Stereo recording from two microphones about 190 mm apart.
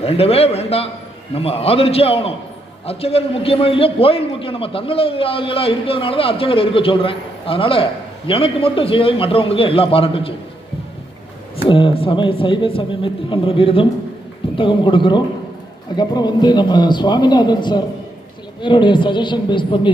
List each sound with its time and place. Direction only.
0.0 s a man's voice: 30° left (ahead or behind)
11.5 s a man's voice: 30° left (ahead or behind)